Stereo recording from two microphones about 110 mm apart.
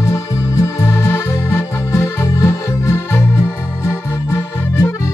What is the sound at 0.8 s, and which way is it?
Music, 25° left (ahead or behind).